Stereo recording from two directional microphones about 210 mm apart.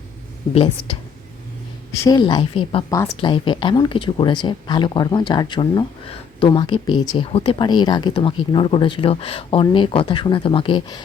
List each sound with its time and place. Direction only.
2.0 s speech: 20° left (ahead or behind)